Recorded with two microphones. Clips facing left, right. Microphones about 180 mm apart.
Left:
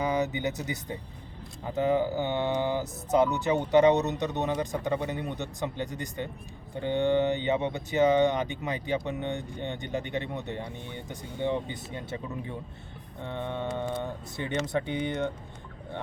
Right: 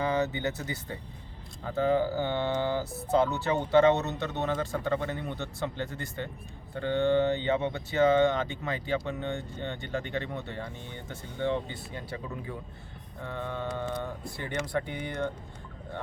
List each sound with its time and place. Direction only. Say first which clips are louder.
0.0 s speech: even; 15° left (ahead or behind)